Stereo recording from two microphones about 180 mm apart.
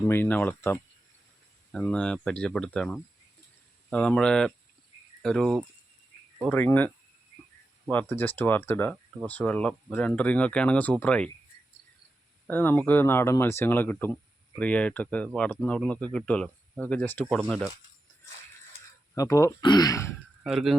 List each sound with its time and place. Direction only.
0.1 s speech: 10° left (ahead or behind)
12.5 s speech: 10° left (ahead or behind)
19.1 s speech: 20° left (ahead or behind)
20.4 s speech: centre (ahead or behind)